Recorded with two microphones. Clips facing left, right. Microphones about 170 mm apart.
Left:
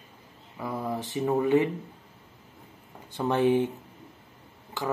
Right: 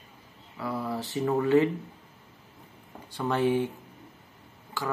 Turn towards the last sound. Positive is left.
turn(degrees=20)  # may be behind; listen again after turning